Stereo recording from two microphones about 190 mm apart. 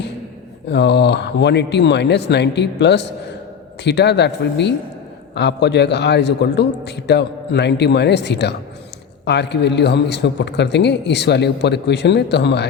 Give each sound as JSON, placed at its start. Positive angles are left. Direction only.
{"t": 0.7, "sound": "a man's voice", "side_deg": 65}